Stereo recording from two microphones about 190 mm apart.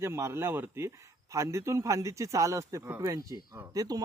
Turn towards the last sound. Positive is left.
turn(degrees=-20)  # may be behind; listen again after turning